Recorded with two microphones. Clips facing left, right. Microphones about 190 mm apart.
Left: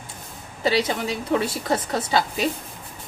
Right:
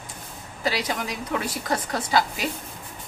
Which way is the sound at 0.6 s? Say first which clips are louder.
Left 5 dB; 25° left (ahead or behind).